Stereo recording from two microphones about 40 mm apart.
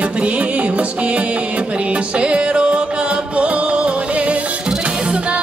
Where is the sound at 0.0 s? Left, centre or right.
Right.